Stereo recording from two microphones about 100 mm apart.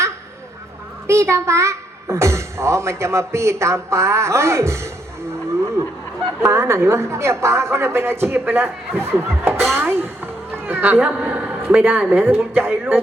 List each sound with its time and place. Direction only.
1.0 s a child's voice: 30° right (ahead or behind)
6.5 s a child's voice: 30° right (ahead or behind)